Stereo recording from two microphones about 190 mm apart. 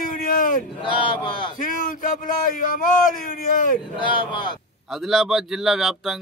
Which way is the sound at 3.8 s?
25° left (ahead or behind).